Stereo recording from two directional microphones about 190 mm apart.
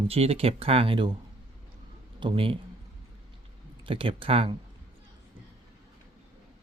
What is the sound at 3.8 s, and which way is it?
Speech, 30° right (ahead or behind).